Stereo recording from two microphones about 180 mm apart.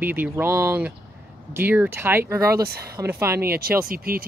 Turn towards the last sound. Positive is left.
turn(degrees=-55)  # may be behind; listen again after turning